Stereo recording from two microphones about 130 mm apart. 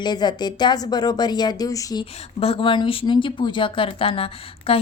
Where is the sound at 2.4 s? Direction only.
45° left (ahead or behind).